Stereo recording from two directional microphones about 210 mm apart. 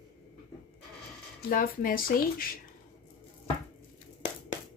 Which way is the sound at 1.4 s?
40° left (ahead or behind).